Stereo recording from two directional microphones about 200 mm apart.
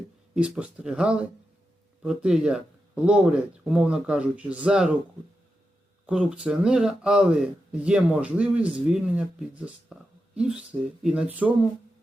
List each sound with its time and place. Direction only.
0.3 s speech: 5° right (ahead or behind)
6.1 s speech: 5° right (ahead or behind)